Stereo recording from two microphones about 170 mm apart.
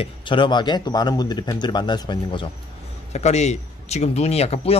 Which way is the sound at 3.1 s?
40° left (ahead or behind).